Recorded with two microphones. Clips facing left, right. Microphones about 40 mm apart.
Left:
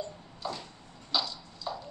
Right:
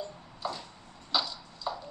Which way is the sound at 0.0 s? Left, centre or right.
Centre.